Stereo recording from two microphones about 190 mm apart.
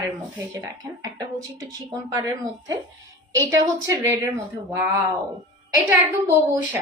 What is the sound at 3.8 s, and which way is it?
Speech, 15° right (ahead or behind).